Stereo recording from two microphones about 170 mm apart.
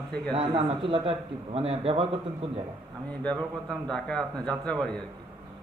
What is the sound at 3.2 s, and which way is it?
A man's voice, 5° left (ahead or behind).